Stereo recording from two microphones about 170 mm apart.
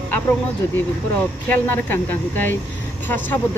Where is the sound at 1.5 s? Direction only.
10° left (ahead or behind).